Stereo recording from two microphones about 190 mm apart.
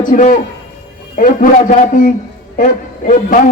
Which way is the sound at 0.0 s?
45° left (ahead or behind).